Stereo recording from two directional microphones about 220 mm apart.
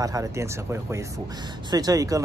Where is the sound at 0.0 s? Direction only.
15° right (ahead or behind).